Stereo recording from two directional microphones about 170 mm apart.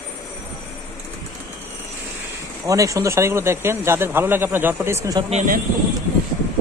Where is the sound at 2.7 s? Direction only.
20° right (ahead or behind).